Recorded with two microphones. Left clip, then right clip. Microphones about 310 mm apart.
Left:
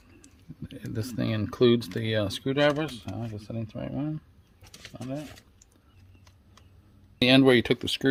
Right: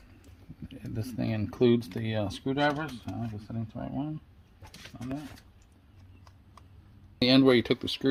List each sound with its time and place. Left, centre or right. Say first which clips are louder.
0.7 s speech: left 4 dB; left
7.2 s speech: left 3 dB; left